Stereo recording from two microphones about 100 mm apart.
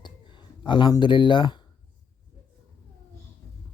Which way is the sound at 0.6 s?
50° left (ahead or behind).